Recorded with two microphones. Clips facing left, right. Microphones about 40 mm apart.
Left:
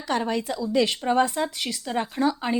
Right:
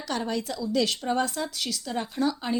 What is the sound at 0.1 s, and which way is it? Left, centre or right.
A woman's voice, left.